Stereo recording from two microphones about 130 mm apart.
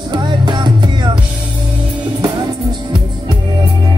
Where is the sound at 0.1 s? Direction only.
35° right (ahead or behind).